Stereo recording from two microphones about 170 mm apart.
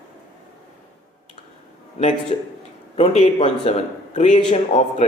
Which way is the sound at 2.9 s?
40° left (ahead or behind).